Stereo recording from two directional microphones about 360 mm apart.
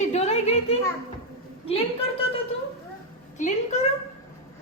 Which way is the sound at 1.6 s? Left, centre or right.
Centre.